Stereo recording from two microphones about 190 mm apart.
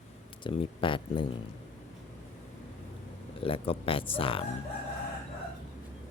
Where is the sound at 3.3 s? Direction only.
30° left (ahead or behind).